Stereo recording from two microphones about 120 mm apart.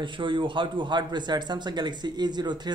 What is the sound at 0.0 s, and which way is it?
Speech, 40° right (ahead or behind).